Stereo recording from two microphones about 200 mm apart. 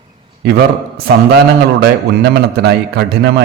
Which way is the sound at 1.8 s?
55° right (ahead or behind).